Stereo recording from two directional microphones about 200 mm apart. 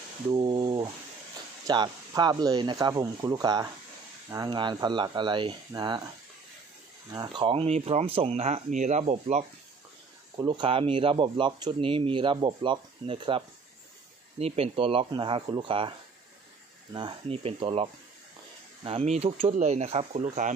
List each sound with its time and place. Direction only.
0.3 s speech: 25° right (ahead or behind)
7.2 s speech: 25° right (ahead or behind)
10.3 s speech: 20° right (ahead or behind)
14.4 s speech: 30° right (ahead or behind)
16.9 s speech: 25° right (ahead or behind)
18.9 s speech: 30° right (ahead or behind)